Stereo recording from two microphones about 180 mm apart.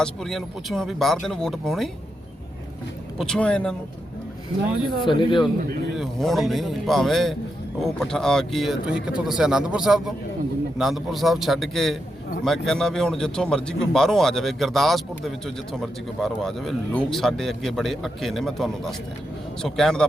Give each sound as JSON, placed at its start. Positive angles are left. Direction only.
{"t": 0.0, "sound": "a man's voice", "side_deg": 5}
{"t": 3.2, "sound": "a man's voice", "side_deg": 5}
{"t": 4.9, "sound": "speech", "side_deg": 25}
{"t": 6.0, "sound": "a man's voice", "side_deg": 0}